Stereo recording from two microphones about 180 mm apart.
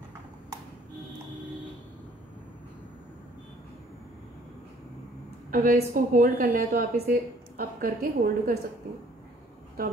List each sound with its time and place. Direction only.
5.5 s a woman's voice: 50° right (ahead or behind)
9.8 s speech: 55° right (ahead or behind)